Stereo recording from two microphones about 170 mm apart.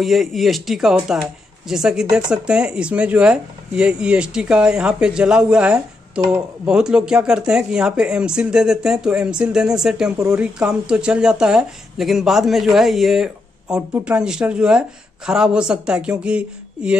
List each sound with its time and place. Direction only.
0.0 s speech: centre (ahead or behind)